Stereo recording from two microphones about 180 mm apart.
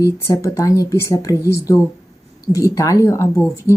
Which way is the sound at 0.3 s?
15° left (ahead or behind).